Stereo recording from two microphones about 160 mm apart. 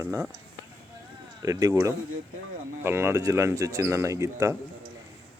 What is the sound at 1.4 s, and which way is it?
Speech, 25° right (ahead or behind).